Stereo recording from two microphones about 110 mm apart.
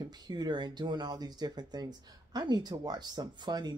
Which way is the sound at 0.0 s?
40° right (ahead or behind).